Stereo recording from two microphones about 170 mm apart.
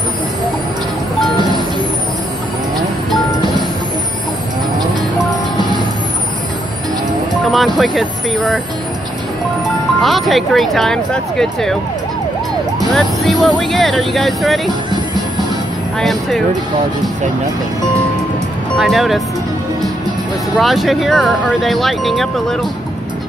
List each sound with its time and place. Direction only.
7.5 s speech: centre (ahead or behind)
10.0 s speech: centre (ahead or behind)
12.9 s speech: centre (ahead or behind)
14.7 s music: 25° right (ahead or behind)
16.0 s speech: centre (ahead or behind)
18.8 s speech: centre (ahead or behind)
20.5 s speech: centre (ahead or behind)